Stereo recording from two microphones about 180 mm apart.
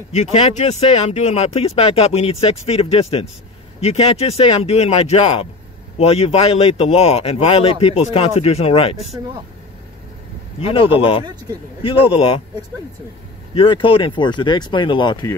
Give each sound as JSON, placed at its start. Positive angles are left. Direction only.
{"t": 0.1, "sound": "speech", "side_deg": 35}
{"t": 10.7, "sound": "speech", "side_deg": 30}
{"t": 13.6, "sound": "speech", "side_deg": 30}